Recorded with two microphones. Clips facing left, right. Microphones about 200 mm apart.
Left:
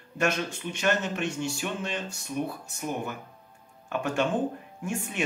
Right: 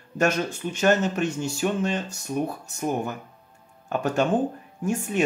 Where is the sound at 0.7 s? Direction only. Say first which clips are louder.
Right 6 dB; 40° right (ahead or behind).